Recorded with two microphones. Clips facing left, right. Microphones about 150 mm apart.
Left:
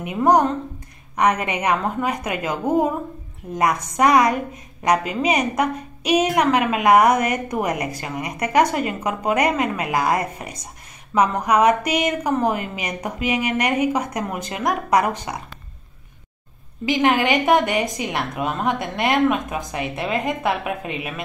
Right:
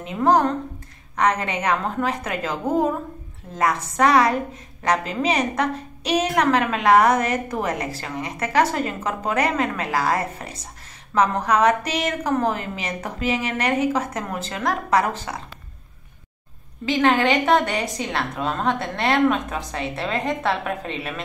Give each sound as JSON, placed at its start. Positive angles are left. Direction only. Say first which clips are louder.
{"t": 0.0, "sound": "a woman's voice", "louder": "left 2 dB", "side_deg": 15}
{"t": 16.8, "sound": "a woman's voice", "louder": "even", "side_deg": 15}